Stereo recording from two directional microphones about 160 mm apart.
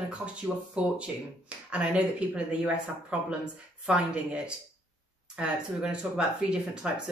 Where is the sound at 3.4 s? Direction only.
5° right (ahead or behind).